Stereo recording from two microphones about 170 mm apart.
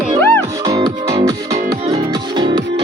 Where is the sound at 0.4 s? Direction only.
20° right (ahead or behind).